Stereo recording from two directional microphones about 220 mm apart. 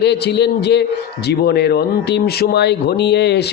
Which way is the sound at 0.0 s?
50° left (ahead or behind).